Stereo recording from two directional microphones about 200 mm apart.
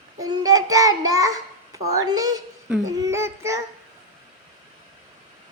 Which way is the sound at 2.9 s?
15° right (ahead or behind).